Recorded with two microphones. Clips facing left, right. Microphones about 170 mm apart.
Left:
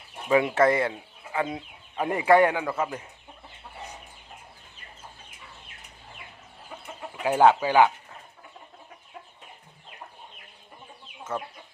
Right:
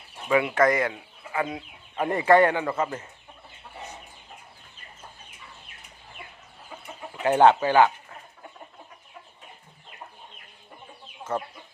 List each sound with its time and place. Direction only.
0.3 s speech: 25° left (ahead or behind)
2.0 s a man's voice: 10° left (ahead or behind)
7.2 s a man's voice: 5° left (ahead or behind)